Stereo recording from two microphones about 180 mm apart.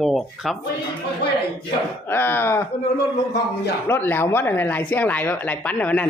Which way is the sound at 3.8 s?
10° left (ahead or behind).